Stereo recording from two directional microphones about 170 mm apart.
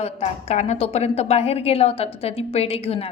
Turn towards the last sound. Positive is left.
turn(degrees=35)  # may be behind; listen again after turning